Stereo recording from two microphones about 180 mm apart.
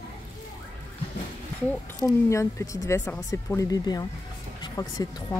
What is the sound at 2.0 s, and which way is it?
Speech, 15° left (ahead or behind).